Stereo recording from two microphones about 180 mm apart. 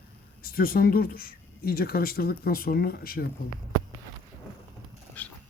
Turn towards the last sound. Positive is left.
turn(degrees=10)  # may be behind; listen again after turning